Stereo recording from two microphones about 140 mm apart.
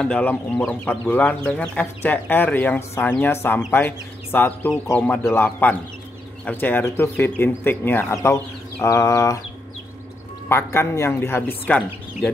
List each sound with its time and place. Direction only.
0.0 s speech: 10° left (ahead or behind)
8.8 s a sound: 20° left (ahead or behind)
10.5 s speech: 20° left (ahead or behind)